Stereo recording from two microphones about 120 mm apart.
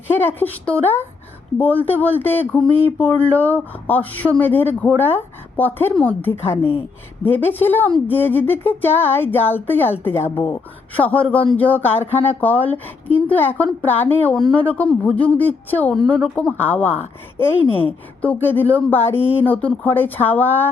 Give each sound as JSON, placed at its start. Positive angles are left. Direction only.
{"t": 0.3, "sound": "speech", "side_deg": 15}
{"t": 17.7, "sound": "a woman's voice", "side_deg": 50}
{"t": 18.2, "sound": "speech", "side_deg": 15}